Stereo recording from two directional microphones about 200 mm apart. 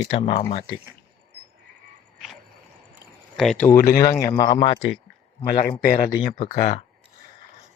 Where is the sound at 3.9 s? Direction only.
15° left (ahead or behind).